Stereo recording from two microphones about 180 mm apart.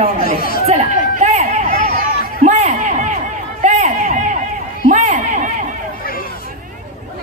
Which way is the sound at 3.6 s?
40° right (ahead or behind).